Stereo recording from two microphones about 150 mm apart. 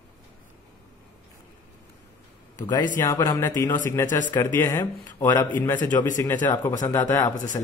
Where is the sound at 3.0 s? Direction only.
25° left (ahead or behind).